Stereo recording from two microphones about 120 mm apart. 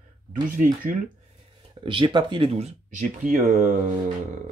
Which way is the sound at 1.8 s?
45° right (ahead or behind).